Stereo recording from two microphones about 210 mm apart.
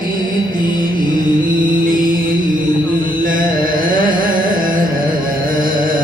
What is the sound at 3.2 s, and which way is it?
Carnatic music, 40° right (ahead or behind).